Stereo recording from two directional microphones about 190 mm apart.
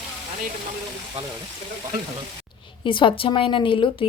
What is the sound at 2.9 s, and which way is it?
Speech, 25° left (ahead or behind).